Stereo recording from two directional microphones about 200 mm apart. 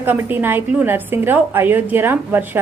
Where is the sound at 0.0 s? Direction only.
10° right (ahead or behind).